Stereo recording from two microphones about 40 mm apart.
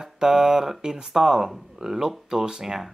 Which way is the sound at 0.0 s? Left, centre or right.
Centre.